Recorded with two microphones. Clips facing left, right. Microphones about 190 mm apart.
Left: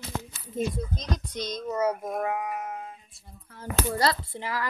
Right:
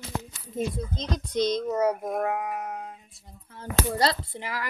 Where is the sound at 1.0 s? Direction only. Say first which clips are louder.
Right 6 dB; 25° right (ahead or behind).